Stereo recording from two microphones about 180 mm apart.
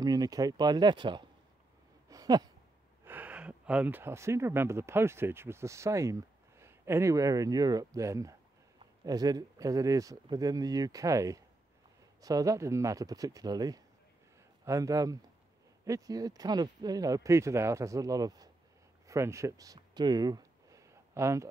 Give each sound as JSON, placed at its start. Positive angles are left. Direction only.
{"t": 0.0, "sound": "speech", "side_deg": -20}
{"t": 2.0, "sound": "a sound", "side_deg": -20}
{"t": 3.1, "sound": "speech", "side_deg": -10}